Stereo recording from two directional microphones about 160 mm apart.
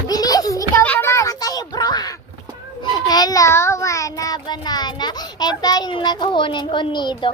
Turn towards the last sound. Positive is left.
turn(degrees=30)  # may be behind; listen again after turning